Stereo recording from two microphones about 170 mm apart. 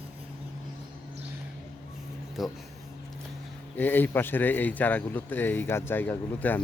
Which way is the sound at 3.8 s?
10° left (ahead or behind).